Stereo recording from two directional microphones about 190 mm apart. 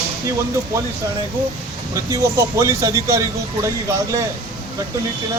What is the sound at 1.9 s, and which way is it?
Speech, 15° right (ahead or behind).